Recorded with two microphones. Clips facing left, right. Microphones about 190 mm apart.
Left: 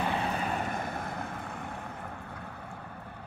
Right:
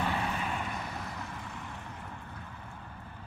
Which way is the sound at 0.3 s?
40° left (ahead or behind).